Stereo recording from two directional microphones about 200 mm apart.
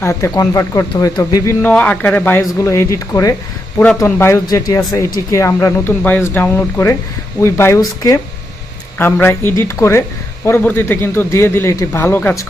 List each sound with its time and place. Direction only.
0.0 s speech: 15° left (ahead or behind)